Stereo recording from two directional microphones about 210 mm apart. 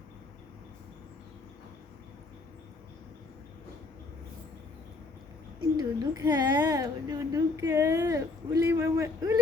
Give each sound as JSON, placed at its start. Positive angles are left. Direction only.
{"t": 5.7, "sound": "a woman's voice", "side_deg": -20}